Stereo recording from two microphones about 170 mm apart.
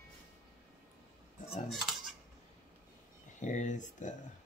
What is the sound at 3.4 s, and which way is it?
Speech, 45° left (ahead or behind).